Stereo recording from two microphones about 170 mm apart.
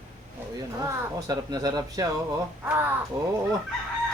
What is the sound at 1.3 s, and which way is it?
Speech, 25° right (ahead or behind).